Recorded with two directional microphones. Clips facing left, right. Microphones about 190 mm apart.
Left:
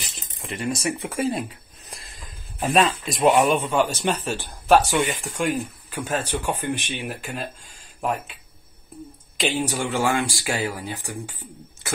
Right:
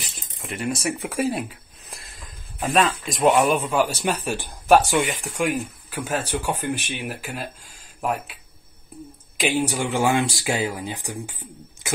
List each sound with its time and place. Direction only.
0.4 s speech: centre (ahead or behind)
0.8 s a sound: 10° right (ahead or behind)
2.8 s speech: centre (ahead or behind)
9.4 s speech: 10° right (ahead or behind)